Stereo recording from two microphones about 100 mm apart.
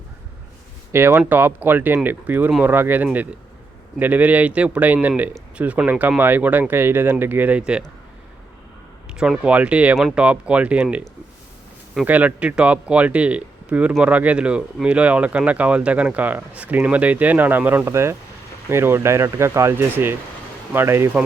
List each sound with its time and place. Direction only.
0.9 s speech: 20° right (ahead or behind)
9.1 s speech: 5° right (ahead or behind)
12.0 s speech: 15° right (ahead or behind)